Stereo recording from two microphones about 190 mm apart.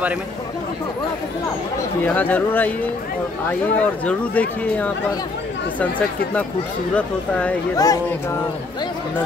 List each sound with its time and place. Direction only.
2.0 s speech: 10° left (ahead or behind)
7.7 s speech: 20° left (ahead or behind)